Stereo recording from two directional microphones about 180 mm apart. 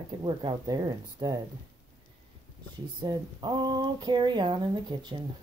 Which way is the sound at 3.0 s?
25° right (ahead or behind).